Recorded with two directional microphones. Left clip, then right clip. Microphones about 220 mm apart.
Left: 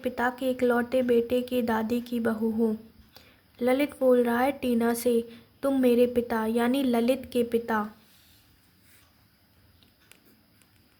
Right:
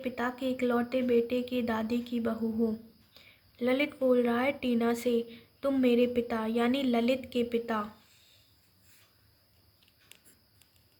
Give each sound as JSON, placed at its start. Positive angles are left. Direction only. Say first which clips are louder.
{"t": 0.0, "sound": "a woman's voice", "louder": "left 5 dB", "side_deg": 35}